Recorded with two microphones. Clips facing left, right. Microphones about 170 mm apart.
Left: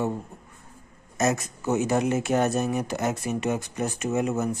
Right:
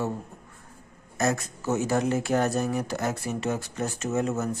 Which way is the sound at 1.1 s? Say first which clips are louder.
Left 2 dB; 20° left (ahead or behind).